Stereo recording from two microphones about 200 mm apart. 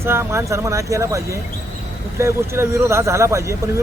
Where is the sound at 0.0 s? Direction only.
10° right (ahead or behind).